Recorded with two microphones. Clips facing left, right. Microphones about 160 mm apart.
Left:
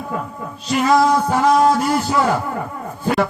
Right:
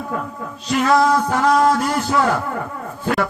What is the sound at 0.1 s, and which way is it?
Speech, 5° left (ahead or behind).